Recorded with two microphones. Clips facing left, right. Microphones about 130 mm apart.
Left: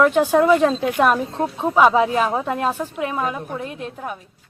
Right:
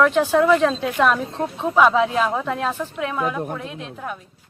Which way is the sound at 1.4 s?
10° left (ahead or behind).